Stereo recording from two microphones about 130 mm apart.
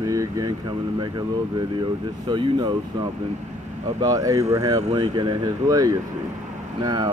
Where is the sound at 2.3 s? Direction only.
35° right (ahead or behind).